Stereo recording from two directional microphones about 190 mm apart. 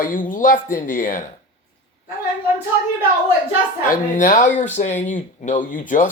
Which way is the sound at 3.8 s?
45° left (ahead or behind).